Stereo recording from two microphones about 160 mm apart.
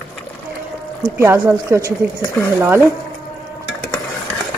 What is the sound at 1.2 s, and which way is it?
Speech, 15° right (ahead or behind).